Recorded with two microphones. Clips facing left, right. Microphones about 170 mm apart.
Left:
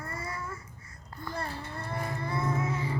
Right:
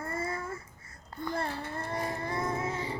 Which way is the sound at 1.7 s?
40° right (ahead or behind).